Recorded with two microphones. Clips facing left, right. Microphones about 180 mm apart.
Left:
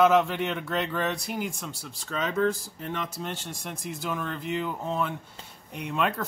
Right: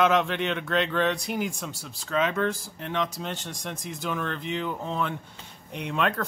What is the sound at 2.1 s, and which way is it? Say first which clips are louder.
Speech: right 1 dB; 90° right.